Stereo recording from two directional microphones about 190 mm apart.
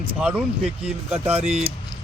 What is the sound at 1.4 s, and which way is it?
Speech, 35° right (ahead or behind).